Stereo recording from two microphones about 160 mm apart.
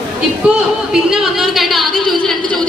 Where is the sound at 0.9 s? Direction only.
5° right (ahead or behind).